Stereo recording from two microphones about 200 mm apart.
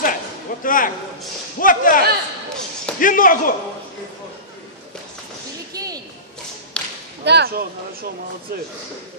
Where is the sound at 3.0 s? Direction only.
45° left (ahead or behind).